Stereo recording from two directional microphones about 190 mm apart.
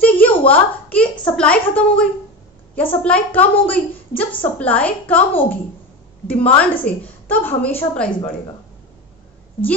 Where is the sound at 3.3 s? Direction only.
10° left (ahead or behind).